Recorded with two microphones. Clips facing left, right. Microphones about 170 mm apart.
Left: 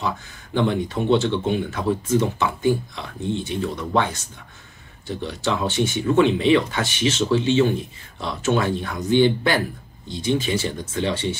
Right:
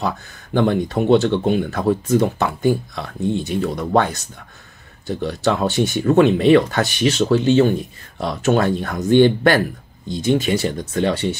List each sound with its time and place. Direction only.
0.5 s speech: 45° right (ahead or behind)